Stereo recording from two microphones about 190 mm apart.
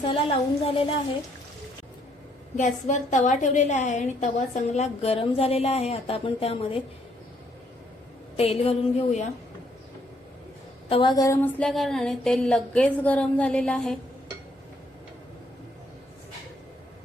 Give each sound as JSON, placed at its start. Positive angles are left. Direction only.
{"t": 0.0, "sound": "a woman's voice", "side_deg": 30}
{"t": 2.6, "sound": "a woman's voice", "side_deg": 40}
{"t": 8.4, "sound": "a woman's voice", "side_deg": 30}
{"t": 10.8, "sound": "a sound", "side_deg": 25}